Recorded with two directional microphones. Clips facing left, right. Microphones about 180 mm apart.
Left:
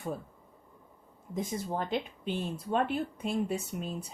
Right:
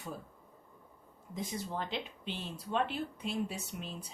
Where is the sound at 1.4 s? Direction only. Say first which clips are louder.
Left 5 dB; 50° left (ahead or behind).